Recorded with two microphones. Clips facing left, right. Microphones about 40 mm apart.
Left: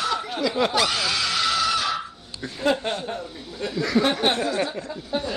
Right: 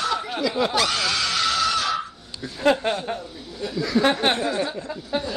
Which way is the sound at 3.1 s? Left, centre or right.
Right.